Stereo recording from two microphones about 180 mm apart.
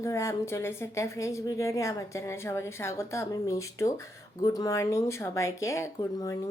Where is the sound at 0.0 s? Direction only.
15° left (ahead or behind).